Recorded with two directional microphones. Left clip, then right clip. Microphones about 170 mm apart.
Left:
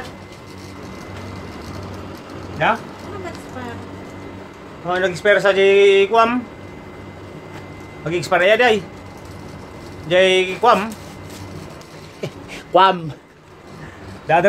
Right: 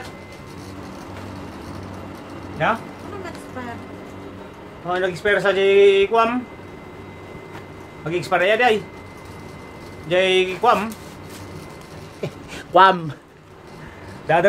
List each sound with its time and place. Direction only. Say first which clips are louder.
2.6 s speech: left 3 dB; 15° left (ahead or behind)
4.8 s speech: left 4 dB; 25° left (ahead or behind)
8.0 s speech: left 3 dB; 25° left (ahead or behind)
10.0 s speech: left 3 dB; 25° left (ahead or behind)
12.7 s speech: even; 5° right (ahead or behind)
14.3 s a man's voice: left 2 dB; centre (ahead or behind)